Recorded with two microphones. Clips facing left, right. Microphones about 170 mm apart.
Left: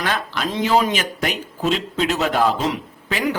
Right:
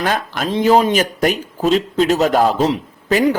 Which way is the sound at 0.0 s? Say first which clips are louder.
Right 4 dB; 45° right (ahead or behind).